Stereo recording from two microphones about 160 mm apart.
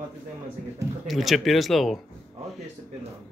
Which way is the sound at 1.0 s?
Centre (ahead or behind).